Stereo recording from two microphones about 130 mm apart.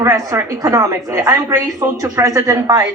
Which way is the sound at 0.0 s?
25° right (ahead or behind).